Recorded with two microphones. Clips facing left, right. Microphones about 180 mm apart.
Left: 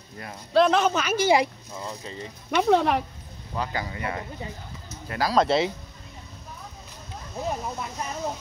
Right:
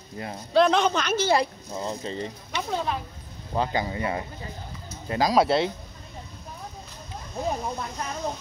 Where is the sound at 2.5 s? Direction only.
75° left (ahead or behind).